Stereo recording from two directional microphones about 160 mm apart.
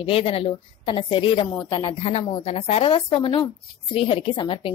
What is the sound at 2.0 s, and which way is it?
A woman's voice, 45° left (ahead or behind).